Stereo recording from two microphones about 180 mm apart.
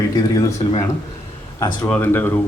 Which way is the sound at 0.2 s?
20° left (ahead or behind).